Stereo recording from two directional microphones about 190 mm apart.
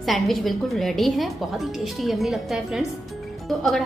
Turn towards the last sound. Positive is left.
turn(degrees=0)  # may be behind; listen again after turning